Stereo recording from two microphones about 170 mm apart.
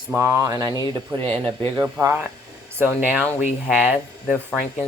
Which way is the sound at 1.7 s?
15° right (ahead or behind).